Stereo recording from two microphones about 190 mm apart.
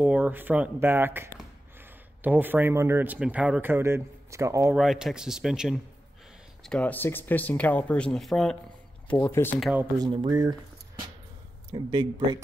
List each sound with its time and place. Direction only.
0.0 s speech: 5° right (ahead or behind)
4.7 s speech: centre (ahead or behind)
9.1 s speech: 10° left (ahead or behind)
9.6 s speech: 5° right (ahead or behind)
10.0 s speech: 20° right (ahead or behind)